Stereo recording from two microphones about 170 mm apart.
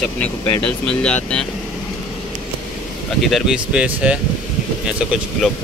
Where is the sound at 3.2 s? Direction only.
5° right (ahead or behind).